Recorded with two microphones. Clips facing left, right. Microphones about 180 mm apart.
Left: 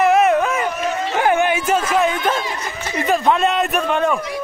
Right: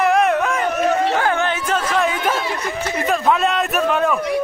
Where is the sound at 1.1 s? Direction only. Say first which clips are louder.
Left 3 dB; 15° left (ahead or behind).